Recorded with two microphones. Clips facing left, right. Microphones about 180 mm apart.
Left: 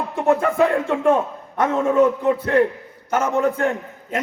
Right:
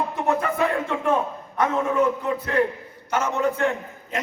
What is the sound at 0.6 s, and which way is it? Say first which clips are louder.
Speech: left 6 dB; 50° left (ahead or behind).